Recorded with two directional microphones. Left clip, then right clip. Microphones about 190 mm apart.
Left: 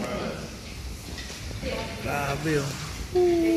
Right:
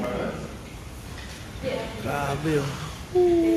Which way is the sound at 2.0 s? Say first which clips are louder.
Even; centre (ahead or behind).